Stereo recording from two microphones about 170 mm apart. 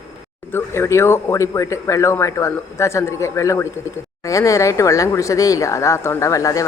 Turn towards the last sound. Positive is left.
turn(degrees=20)  # may be behind; listen again after turning